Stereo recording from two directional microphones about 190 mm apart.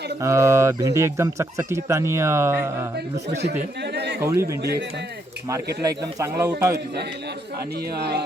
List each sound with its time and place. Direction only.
0.2 s speech: 15° right (ahead or behind)
3.3 s speech: 60° right (ahead or behind)
4.2 s speech: 15° right (ahead or behind)
4.6 s a man's voice: 60° right (ahead or behind)
5.8 s speech: 20° right (ahead or behind)
7.9 s a man's voice: 60° right (ahead or behind)